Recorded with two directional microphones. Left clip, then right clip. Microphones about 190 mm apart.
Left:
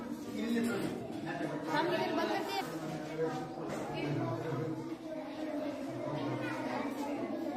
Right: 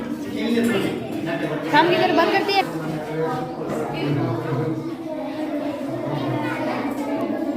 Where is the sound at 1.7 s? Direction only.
40° right (ahead or behind).